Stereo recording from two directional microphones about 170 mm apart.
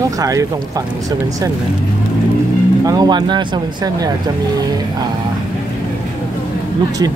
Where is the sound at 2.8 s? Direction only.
20° right (ahead or behind).